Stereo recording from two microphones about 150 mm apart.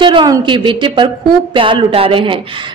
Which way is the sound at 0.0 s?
30° right (ahead or behind).